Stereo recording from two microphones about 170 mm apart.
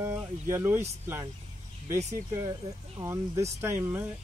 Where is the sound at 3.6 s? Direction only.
15° right (ahead or behind).